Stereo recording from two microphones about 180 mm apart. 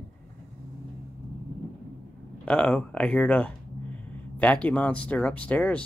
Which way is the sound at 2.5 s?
5° left (ahead or behind).